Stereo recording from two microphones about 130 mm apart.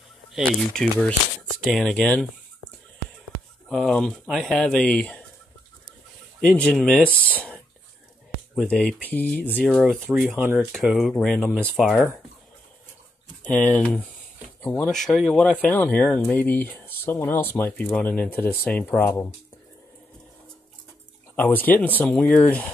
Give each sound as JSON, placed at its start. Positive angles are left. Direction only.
{"t": 0.3, "sound": "speech", "side_deg": 0}
{"t": 3.6, "sound": "speech", "side_deg": 5}
{"t": 6.4, "sound": "speech", "side_deg": 5}
{"t": 9.9, "sound": "speech", "side_deg": -10}
{"t": 13.4, "sound": "speech", "side_deg": 15}
{"t": 14.9, "sound": "speech", "side_deg": 0}
{"t": 21.4, "sound": "speech", "side_deg": 15}